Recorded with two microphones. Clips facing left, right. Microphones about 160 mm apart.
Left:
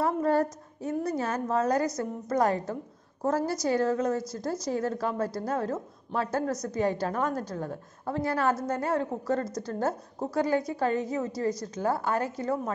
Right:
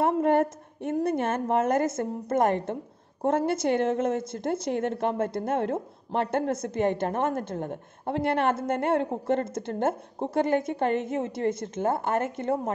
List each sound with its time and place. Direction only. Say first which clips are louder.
0.0 s a woman's voice: right 3 dB; 25° right (ahead or behind)